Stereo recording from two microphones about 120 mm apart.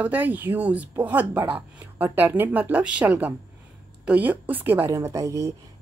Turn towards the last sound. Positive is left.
turn(degrees=-25)  # may be behind; listen again after turning